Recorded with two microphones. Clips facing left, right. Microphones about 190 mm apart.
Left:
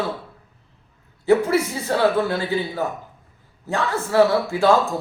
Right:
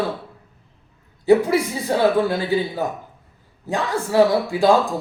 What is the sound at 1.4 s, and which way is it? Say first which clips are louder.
A man's voice: right 1 dB; 15° right (ahead or behind).